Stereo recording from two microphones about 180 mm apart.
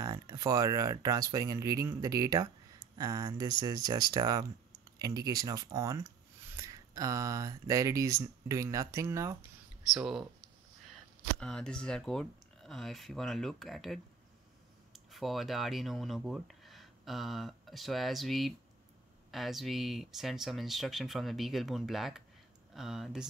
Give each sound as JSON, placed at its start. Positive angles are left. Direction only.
{"t": 0.0, "sound": "speech", "side_deg": -20}
{"t": 9.9, "sound": "speech", "side_deg": -5}